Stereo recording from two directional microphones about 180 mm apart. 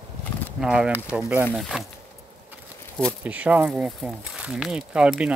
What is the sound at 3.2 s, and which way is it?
Speech, 10° right (ahead or behind).